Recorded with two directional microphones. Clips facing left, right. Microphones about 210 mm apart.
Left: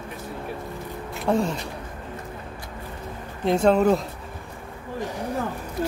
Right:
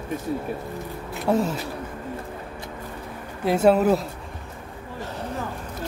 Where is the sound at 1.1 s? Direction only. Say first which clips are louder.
Right 1 dB; 5° right (ahead or behind).